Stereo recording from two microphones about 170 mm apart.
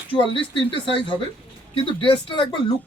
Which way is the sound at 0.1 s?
30° left (ahead or behind).